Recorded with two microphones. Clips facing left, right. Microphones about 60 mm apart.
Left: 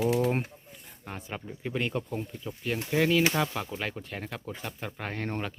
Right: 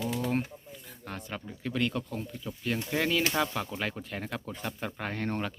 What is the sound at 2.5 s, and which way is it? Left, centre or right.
Speech, centre.